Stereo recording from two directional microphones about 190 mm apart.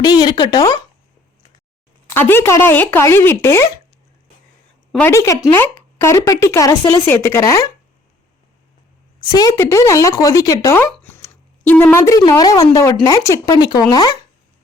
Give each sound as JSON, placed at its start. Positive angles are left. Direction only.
{"t": 0.0, "sound": "speech", "side_deg": 20}
{"t": 2.0, "sound": "speech", "side_deg": 10}
{"t": 4.9, "sound": "speech", "side_deg": 10}
{"t": 9.2, "sound": "speech", "side_deg": 20}
{"t": 10.9, "sound": "a sound", "side_deg": 10}
{"t": 11.7, "sound": "speech", "side_deg": 10}